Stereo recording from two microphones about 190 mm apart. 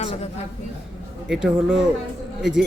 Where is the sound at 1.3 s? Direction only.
Centre (ahead or behind).